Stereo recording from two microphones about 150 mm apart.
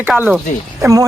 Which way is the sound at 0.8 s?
20° right (ahead or behind).